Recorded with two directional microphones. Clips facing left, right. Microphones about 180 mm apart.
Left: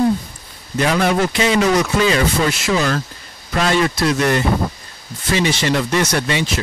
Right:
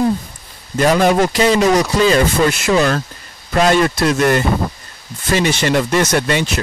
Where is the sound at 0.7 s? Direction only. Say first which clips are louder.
Right 4 dB; 40° right (ahead or behind).